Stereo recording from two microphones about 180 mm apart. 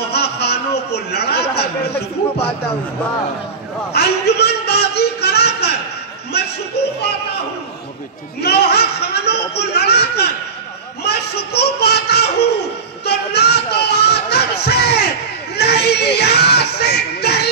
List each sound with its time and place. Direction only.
0.1 s chatter: 65° left (ahead or behind)
1.9 s a man's voice: 35° left (ahead or behind)
3.9 s a sound: 65° left (ahead or behind)
6.8 s speech: 65° left (ahead or behind)
8.4 s speech: 65° left (ahead or behind)
13.0 s music: 65° left (ahead or behind)